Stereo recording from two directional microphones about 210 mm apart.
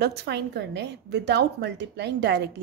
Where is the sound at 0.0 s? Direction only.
50° right (ahead or behind).